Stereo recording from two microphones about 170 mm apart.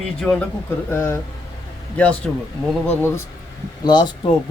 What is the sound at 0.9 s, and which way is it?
Speech, 15° left (ahead or behind).